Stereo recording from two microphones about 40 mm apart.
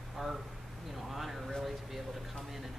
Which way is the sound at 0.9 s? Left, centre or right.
Centre.